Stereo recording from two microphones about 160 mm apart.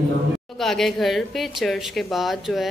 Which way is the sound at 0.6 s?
Centre (ahead or behind).